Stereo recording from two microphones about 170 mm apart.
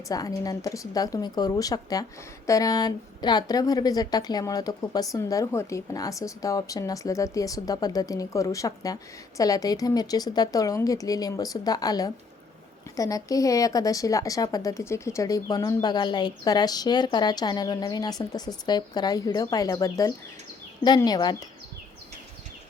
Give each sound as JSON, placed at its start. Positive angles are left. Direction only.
{"t": 0.1, "sound": "a woman's voice", "side_deg": 20}